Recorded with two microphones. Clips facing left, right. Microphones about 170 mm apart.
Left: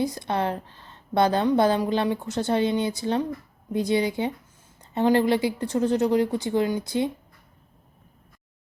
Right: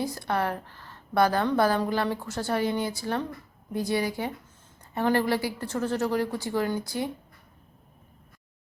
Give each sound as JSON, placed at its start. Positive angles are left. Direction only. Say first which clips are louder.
{"t": 0.0, "sound": "a woman's voice", "louder": "left 3 dB", "side_deg": 20}